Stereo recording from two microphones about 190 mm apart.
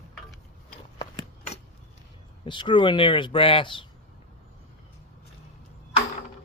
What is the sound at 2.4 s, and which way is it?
Speech, 25° left (ahead or behind).